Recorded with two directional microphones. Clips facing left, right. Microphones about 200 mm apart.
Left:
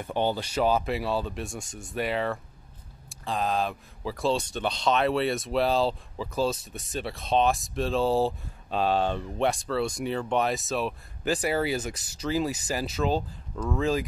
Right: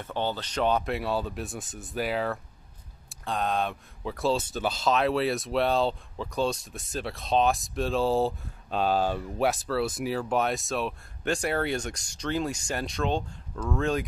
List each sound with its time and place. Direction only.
0.0 s speech: 15° left (ahead or behind)